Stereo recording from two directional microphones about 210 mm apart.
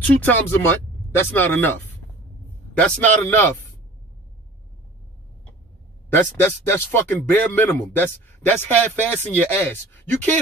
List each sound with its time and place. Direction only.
0.0 s speech: 10° left (ahead or behind)
6.1 s speech: 10° left (ahead or behind)